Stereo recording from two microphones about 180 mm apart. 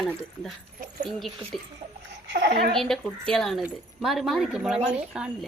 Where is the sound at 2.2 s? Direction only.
65° right (ahead or behind).